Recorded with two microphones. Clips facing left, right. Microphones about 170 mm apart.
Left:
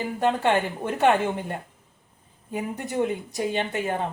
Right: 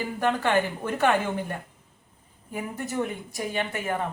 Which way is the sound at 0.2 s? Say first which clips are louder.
Left 2 dB; 20° left (ahead or behind).